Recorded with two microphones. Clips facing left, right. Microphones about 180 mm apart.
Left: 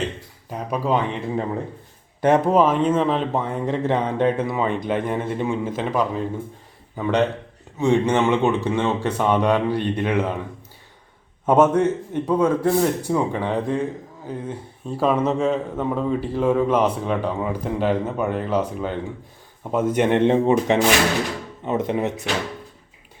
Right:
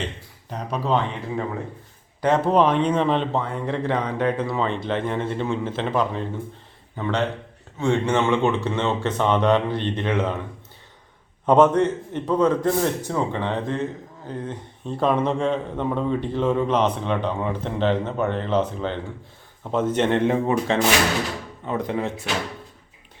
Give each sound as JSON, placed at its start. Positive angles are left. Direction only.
{"t": 0.5, "sound": "speech", "side_deg": 10}
{"t": 2.2, "sound": "speech", "side_deg": 20}
{"t": 2.5, "sound": "a man's voice", "side_deg": 5}
{"t": 3.3, "sound": "speech", "side_deg": 15}
{"t": 4.5, "sound": "speech", "side_deg": 10}
{"t": 11.4, "sound": "speech", "side_deg": 10}